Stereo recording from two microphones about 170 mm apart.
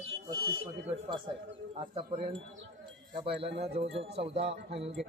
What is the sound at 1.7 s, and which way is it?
Speech, 30° right (ahead or behind).